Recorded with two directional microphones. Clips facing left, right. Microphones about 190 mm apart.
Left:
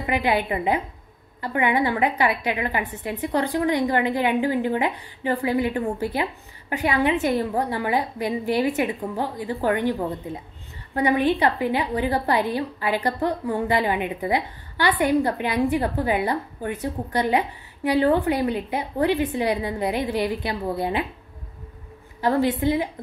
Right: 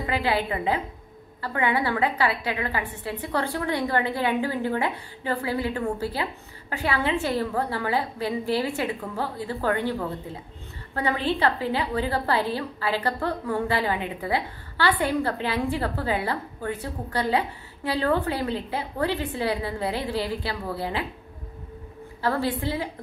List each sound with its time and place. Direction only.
0.0 s a woman's voice: 20° left (ahead or behind)
22.2 s a woman's voice: 15° left (ahead or behind)